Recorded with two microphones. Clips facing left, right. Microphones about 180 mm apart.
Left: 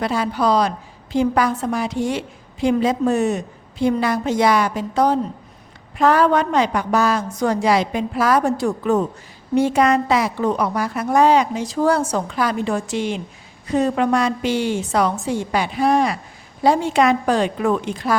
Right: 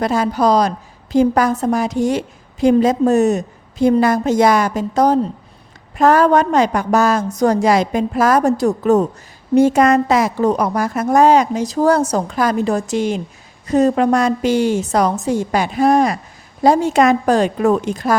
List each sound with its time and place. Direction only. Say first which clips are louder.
0.0 s a woman's voice: right 4 dB; 45° right (ahead or behind)